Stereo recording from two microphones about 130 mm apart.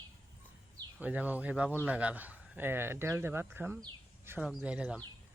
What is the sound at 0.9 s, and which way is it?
Speech, 10° right (ahead or behind).